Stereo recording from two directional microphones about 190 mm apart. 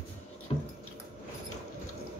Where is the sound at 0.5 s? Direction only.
30° left (ahead or behind).